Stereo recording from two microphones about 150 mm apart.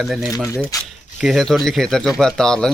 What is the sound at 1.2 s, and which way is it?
Speech, centre (ahead or behind).